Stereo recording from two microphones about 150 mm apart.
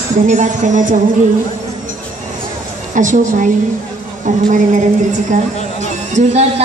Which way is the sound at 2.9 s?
60° right (ahead or behind).